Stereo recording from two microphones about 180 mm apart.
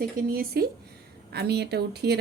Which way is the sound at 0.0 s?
55° right (ahead or behind).